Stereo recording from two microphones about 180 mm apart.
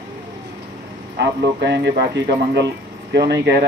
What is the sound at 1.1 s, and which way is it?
A man's voice, 75° right (ahead or behind).